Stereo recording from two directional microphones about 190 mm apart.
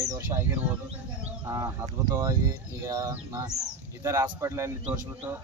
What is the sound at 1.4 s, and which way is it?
Speech, 15° right (ahead or behind).